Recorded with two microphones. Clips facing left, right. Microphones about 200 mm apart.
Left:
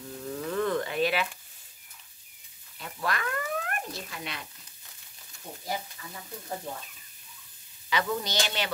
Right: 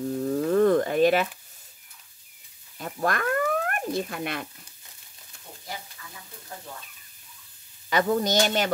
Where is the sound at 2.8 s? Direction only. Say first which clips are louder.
Right 5 dB; 45° right (ahead or behind).